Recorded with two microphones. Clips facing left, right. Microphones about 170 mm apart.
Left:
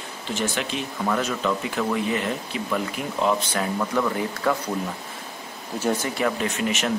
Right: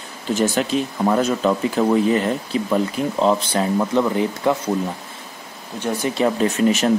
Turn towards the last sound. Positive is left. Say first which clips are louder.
# right 8 dB
turn(degrees=-35)  # may be behind; listen again after turning